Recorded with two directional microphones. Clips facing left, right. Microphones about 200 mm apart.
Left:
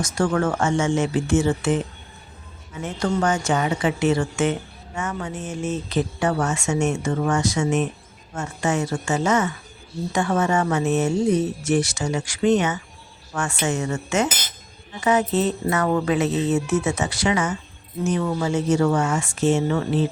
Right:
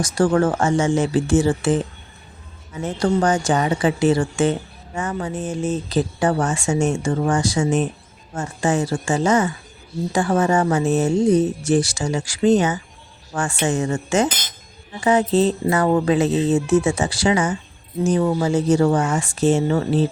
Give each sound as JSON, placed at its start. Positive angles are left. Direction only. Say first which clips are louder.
{"t": 0.0, "sound": "speech", "louder": "right 4 dB", "side_deg": -30}
{"t": 2.8, "sound": "speech", "louder": "right 4 dB", "side_deg": -35}